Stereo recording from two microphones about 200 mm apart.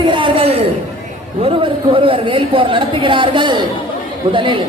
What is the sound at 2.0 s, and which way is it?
Speech, 25° right (ahead or behind).